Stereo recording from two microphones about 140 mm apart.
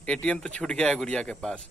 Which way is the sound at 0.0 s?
10° left (ahead or behind).